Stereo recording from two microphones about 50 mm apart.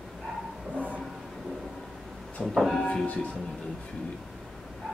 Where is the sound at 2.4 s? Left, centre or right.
Centre.